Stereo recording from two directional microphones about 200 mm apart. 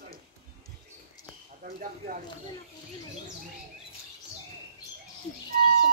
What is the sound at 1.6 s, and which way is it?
Speech, 40° right (ahead or behind).